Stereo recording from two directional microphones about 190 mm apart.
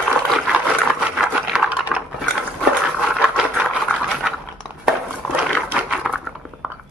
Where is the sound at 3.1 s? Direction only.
5° right (ahead or behind).